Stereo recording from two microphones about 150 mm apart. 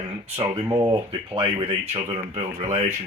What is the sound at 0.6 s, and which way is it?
Speech, 20° right (ahead or behind).